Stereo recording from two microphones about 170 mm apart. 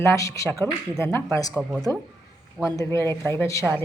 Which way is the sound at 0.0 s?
15° left (ahead or behind).